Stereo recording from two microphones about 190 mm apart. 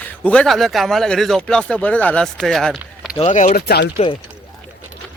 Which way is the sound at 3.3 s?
40° left (ahead or behind).